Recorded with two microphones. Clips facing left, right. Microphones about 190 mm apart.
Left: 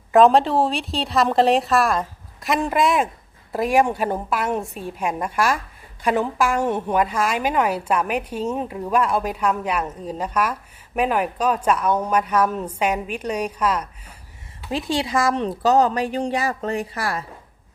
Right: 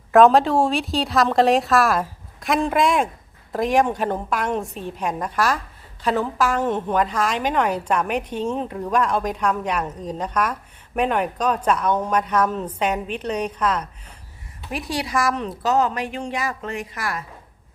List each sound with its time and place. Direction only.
0.1 s a woman's voice: centre (ahead or behind)
14.7 s speech: 25° left (ahead or behind)